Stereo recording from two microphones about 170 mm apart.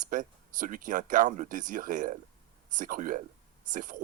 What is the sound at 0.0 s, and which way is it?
Speech, 50° right (ahead or behind).